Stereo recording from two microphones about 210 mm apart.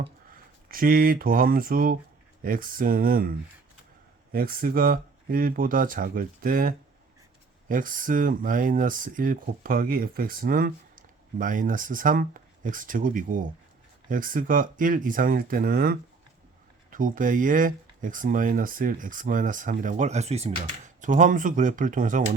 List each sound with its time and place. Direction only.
0.7 s speech: 40° right (ahead or behind)